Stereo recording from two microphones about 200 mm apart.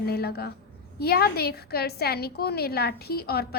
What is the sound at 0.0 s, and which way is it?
A woman's voice, 50° left (ahead or behind).